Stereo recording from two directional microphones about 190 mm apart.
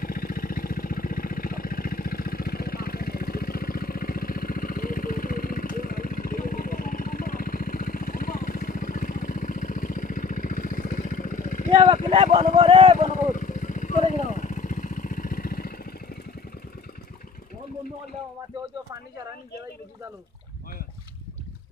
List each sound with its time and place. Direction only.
0.0 s vehicle: 50° left (ahead or behind)
11.7 s speech: 30° right (ahead or behind)
13.1 s vehicle: 45° left (ahead or behind)